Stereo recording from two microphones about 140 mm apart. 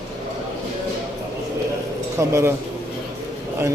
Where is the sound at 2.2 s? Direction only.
20° right (ahead or behind).